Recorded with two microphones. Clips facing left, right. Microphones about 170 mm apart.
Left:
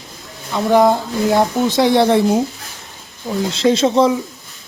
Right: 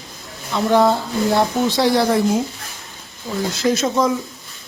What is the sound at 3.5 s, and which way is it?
Speech, 30° left (ahead or behind).